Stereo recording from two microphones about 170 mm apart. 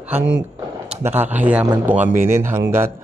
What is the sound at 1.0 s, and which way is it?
Speech, 10° right (ahead or behind).